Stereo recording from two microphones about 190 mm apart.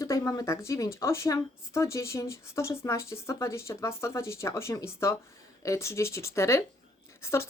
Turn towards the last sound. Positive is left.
turn(degrees=15)  # may be behind; listen again after turning